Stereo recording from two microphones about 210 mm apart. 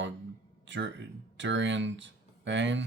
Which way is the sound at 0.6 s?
60° right (ahead or behind).